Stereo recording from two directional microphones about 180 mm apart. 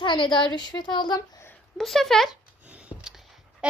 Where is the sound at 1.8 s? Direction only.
Centre (ahead or behind).